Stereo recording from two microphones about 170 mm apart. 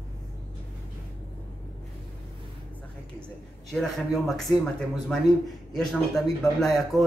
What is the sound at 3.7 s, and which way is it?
A man's voice, centre (ahead or behind).